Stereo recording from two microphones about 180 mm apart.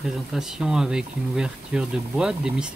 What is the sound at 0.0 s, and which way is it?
Speech, centre (ahead or behind).